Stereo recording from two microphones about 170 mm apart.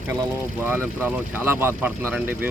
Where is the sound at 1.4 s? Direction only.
10° right (ahead or behind).